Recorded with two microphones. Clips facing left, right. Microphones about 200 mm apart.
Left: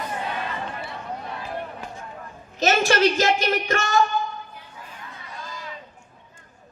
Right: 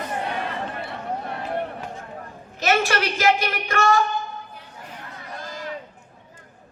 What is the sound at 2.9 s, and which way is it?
Speech, 30° left (ahead or behind).